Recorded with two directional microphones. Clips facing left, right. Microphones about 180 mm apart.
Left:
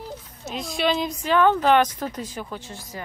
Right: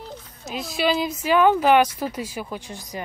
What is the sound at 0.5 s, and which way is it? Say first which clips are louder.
Speech: right 1 dB; 5° right (ahead or behind).